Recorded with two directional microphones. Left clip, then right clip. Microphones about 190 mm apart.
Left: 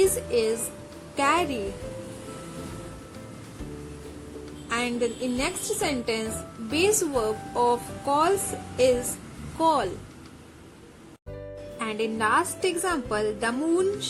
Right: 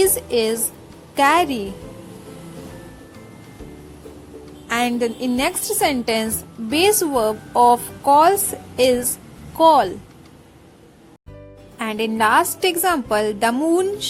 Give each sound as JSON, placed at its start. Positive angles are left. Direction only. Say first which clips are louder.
{"t": 0.0, "sound": "a woman's voice", "louder": "right 5 dB", "side_deg": -40}
{"t": 4.7, "sound": "a woman's voice", "louder": "right 7 dB", "side_deg": -40}
{"t": 9.6, "sound": "a woman's voice", "louder": "right 10 dB", "side_deg": -35}
{"t": 11.8, "sound": "a woman's voice", "louder": "right 7 dB", "side_deg": -35}